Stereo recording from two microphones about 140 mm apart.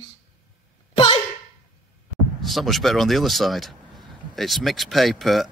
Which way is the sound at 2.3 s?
Centre (ahead or behind).